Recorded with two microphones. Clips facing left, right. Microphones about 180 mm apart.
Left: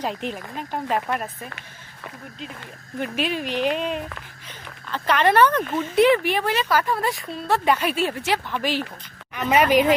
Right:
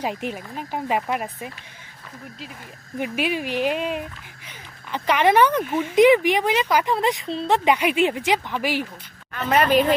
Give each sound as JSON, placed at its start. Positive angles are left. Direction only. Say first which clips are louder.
{"t": 0.0, "sound": "speech", "louder": "right 1 dB", "side_deg": -10}
{"t": 3.0, "sound": "speech", "louder": "right 1 dB", "side_deg": -10}
{"t": 9.3, "sound": "a woman's voice", "louder": "left 1 dB", "side_deg": 15}